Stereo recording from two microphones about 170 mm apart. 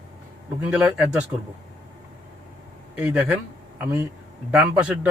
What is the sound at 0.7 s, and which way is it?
Speech, 5° right (ahead or behind).